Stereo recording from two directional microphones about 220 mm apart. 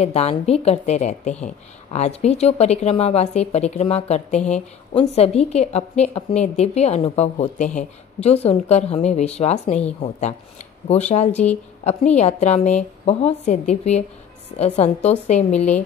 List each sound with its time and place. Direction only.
0.0 s a woman's voice: 30° left (ahead or behind)